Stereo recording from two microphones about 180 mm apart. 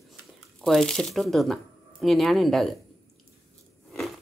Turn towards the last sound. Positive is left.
turn(degrees=0)  # may be behind; listen again after turning